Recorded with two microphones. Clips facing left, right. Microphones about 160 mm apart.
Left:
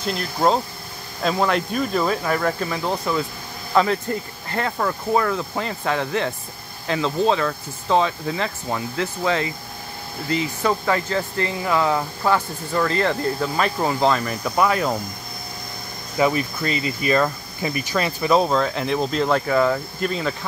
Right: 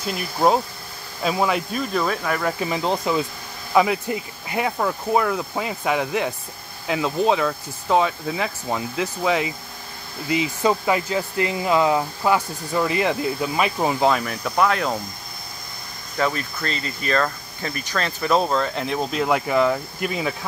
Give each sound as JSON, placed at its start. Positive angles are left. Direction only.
{"t": 0.0, "sound": "speech", "side_deg": -5}
{"t": 2.0, "sound": "speech", "side_deg": 5}
{"t": 2.6, "sound": "speech", "side_deg": -20}
{"t": 16.2, "sound": "speech", "side_deg": 10}